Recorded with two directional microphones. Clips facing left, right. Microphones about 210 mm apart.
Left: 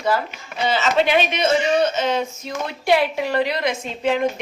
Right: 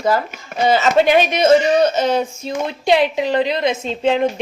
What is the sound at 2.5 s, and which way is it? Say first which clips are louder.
A woman's voice: right 3 dB; 20° right (ahead or behind).